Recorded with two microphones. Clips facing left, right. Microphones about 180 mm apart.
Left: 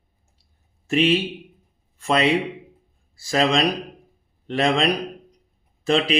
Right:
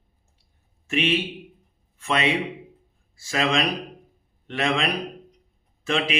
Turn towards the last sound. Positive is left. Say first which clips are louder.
# left 5 dB
turn(degrees=35)  # may be behind; listen again after turning